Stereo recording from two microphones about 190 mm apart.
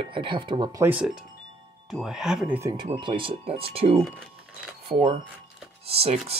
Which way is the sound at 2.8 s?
25° right (ahead or behind).